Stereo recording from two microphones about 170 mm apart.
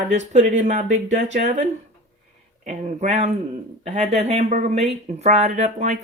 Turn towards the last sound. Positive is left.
turn(degrees=-40)  # may be behind; listen again after turning